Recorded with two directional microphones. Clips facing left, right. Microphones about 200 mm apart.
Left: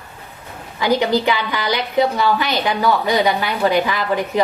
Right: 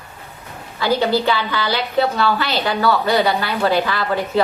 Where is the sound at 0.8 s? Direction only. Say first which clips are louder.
Left 1 dB; 15° left (ahead or behind).